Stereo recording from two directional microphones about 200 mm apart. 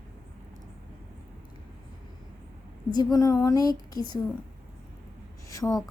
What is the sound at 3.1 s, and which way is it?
Speech, 15° left (ahead or behind).